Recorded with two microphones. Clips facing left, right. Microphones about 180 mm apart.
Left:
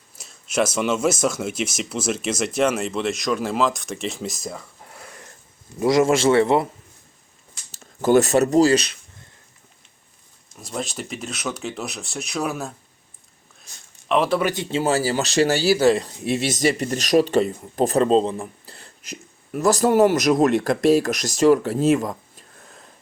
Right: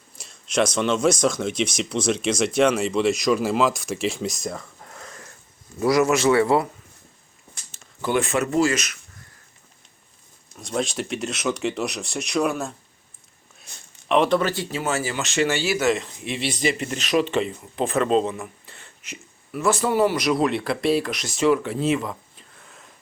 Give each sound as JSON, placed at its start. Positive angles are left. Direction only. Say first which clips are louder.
{"t": 0.2, "sound": "speech", "louder": "even", "side_deg": 5}
{"t": 5.8, "sound": "a man's voice", "louder": "left 2 dB", "side_deg": 25}
{"t": 7.7, "sound": "speech", "louder": "left 7 dB", "side_deg": 40}
{"t": 10.6, "sound": "speech", "louder": "right 4 dB", "side_deg": 0}
{"t": 14.1, "sound": "speech", "louder": "right 1 dB", "side_deg": 5}
{"t": 14.5, "sound": "speech", "louder": "left 4 dB", "side_deg": 25}